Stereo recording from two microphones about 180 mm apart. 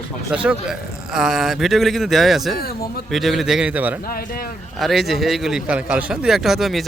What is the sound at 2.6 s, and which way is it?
Speech, 60° left (ahead or behind).